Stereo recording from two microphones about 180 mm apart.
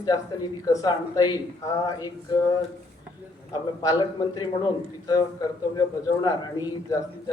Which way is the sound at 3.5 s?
20° left (ahead or behind).